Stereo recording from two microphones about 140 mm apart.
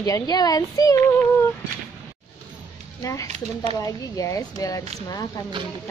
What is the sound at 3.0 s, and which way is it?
A woman's voice, 25° left (ahead or behind).